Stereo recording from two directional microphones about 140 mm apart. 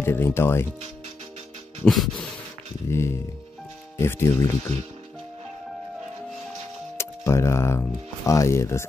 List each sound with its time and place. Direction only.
0.0 s speech: 15° left (ahead or behind)
1.9 s a sound: centre (ahead or behind)
2.9 s speech: 20° left (ahead or behind)
7.0 s speech: 20° left (ahead or behind)